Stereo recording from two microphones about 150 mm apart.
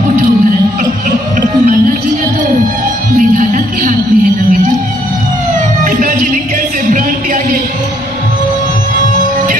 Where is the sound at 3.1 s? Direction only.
60° right (ahead or behind).